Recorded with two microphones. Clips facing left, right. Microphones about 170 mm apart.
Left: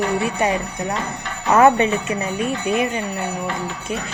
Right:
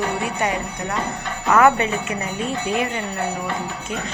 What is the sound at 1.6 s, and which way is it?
Speech, 25° left (ahead or behind).